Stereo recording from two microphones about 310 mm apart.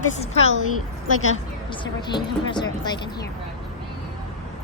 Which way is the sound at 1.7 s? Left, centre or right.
Centre.